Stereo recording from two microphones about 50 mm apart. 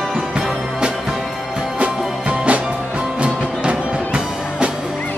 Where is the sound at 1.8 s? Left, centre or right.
Right.